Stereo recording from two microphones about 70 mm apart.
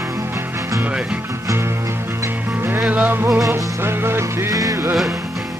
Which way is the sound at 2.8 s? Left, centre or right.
Right.